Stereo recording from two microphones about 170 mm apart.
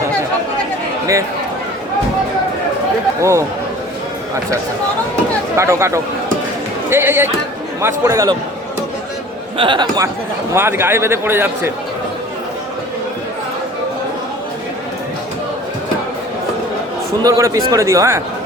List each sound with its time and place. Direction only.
3.2 s speech: 15° right (ahead or behind)
5.5 s a man's voice: 15° right (ahead or behind)
9.6 s speech: 25° right (ahead or behind)
10.5 s a man's voice: 15° right (ahead or behind)
17.1 s a man's voice: 20° right (ahead or behind)